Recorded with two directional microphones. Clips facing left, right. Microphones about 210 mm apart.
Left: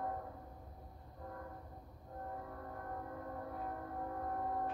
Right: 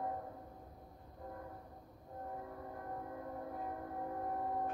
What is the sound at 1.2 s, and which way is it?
Train, 20° right (ahead or behind).